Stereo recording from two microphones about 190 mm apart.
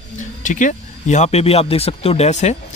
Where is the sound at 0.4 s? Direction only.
40° left (ahead or behind).